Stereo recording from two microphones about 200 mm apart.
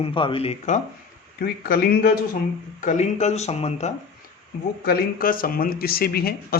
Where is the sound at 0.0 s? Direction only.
25° left (ahead or behind).